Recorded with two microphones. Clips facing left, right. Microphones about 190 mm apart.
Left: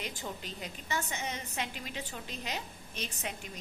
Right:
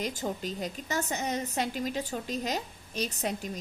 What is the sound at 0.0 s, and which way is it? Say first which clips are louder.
A woman's voice: right 8 dB; 40° right (ahead or behind).